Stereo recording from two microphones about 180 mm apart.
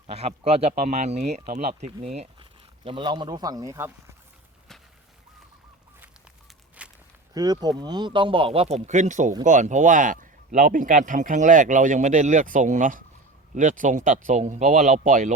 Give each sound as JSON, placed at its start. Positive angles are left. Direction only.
{"t": 0.1, "sound": "speech", "side_deg": -35}
{"t": 6.8, "sound": "walk", "side_deg": -5}
{"t": 7.3, "sound": "speech", "side_deg": -20}